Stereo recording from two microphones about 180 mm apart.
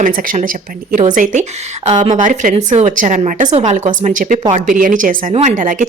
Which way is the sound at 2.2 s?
45° right (ahead or behind).